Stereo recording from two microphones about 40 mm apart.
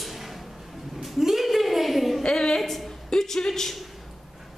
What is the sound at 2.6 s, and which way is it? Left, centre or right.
A woman's voice, centre.